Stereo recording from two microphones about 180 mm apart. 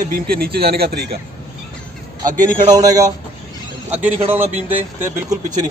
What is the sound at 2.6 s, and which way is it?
Speech, 20° right (ahead or behind).